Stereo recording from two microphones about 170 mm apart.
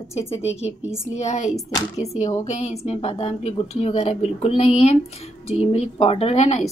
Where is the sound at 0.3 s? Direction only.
35° left (ahead or behind).